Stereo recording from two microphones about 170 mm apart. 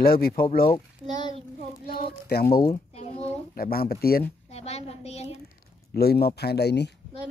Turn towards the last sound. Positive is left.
turn(degrees=75)  # may be behind; listen again after turning